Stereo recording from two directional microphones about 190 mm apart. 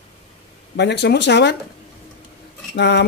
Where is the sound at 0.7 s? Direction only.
60° left (ahead or behind).